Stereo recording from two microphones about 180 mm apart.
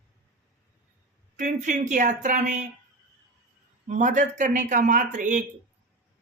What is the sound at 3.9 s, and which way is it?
Speech, 40° right (ahead or behind).